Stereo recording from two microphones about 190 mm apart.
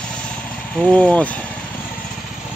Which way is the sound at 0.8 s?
5° left (ahead or behind).